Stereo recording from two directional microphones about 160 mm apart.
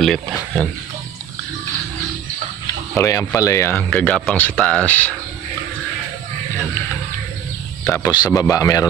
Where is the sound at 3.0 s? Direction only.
20° left (ahead or behind).